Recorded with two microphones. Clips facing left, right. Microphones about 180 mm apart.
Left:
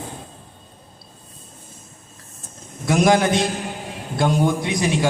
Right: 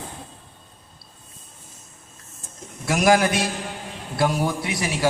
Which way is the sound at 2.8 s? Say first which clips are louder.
Left 2 dB; 20° left (ahead or behind).